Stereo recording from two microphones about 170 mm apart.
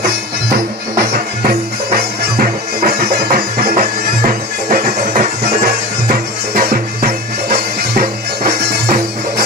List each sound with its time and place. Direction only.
2.3 s music: 65° right (ahead or behind)